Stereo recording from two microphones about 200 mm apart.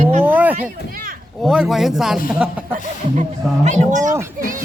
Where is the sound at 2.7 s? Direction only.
35° right (ahead or behind).